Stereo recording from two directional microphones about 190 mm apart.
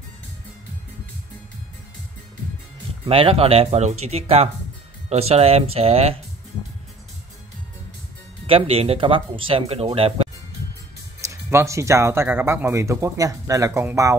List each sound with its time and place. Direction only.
3.1 s speech: 30° right (ahead or behind)
8.5 s speech: 30° right (ahead or behind)
11.1 s speech: 15° right (ahead or behind)